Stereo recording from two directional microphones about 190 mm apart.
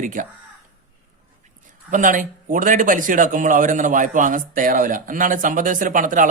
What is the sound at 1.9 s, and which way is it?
Speech, 45° right (ahead or behind).